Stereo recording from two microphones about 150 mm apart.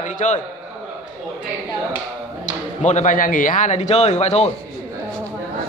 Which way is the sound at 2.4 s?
55° left (ahead or behind).